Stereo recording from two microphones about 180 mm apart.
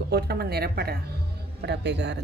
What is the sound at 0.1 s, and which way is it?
Speech, 60° right (ahead or behind).